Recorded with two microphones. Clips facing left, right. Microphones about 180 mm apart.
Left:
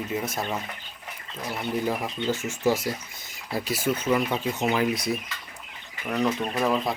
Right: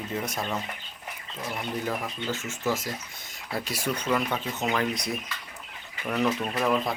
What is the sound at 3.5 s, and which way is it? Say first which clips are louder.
Speech: left 4 dB; centre (ahead or behind).